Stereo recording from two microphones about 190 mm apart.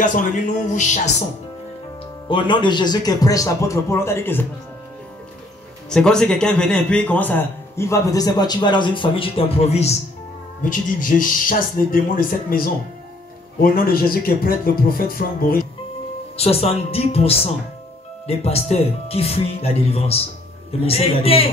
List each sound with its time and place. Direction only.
0.0 s speech: 45° left (ahead or behind)
2.2 s speech: 25° left (ahead or behind)
5.9 s a man's voice: 5° left (ahead or behind); by 9.9 s 35° left (ahead or behind)
10.6 s speech: 45° left (ahead or behind)
16.3 s speech: 30° left (ahead or behind)